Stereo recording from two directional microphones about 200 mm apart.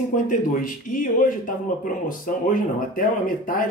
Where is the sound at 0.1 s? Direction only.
40° left (ahead or behind).